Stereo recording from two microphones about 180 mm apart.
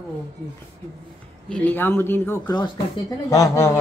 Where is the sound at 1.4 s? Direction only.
10° left (ahead or behind).